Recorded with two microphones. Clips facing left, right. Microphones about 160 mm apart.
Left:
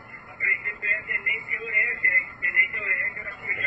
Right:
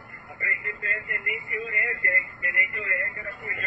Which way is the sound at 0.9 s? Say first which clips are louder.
Right 3 dB; 45° right (ahead or behind).